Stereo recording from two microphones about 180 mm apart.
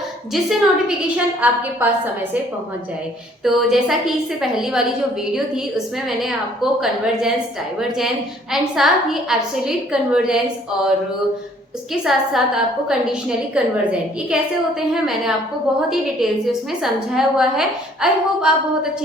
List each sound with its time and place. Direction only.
0.3 s a woman's voice: centre (ahead or behind)
3.4 s a woman's voice: centre (ahead or behind)
12.0 s a woman's voice: centre (ahead or behind)
14.8 s a woman's voice: centre (ahead or behind)